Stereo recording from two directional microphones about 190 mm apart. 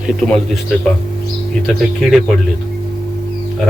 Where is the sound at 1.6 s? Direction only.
Centre (ahead or behind).